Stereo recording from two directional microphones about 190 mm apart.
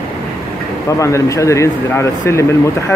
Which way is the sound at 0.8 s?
15° left (ahead or behind).